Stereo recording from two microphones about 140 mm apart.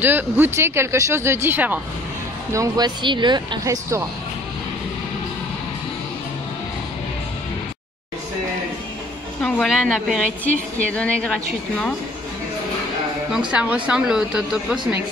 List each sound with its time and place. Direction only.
0.0 s speech: 15° right (ahead or behind)
2.5 s speech: 25° right (ahead or behind)
3.6 s speech: 20° right (ahead or behind)
9.4 s a woman's voice: 5° left (ahead or behind)
13.5 s speech: 10° right (ahead or behind)